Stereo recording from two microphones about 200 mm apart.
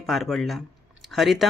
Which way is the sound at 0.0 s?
Centre (ahead or behind).